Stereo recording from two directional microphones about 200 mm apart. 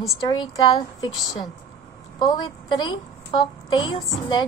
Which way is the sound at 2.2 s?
25° left (ahead or behind).